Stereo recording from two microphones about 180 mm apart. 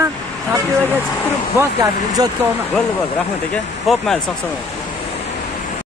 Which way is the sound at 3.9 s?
Centre (ahead or behind).